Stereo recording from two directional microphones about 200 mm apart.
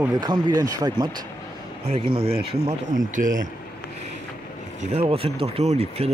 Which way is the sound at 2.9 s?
40° right (ahead or behind).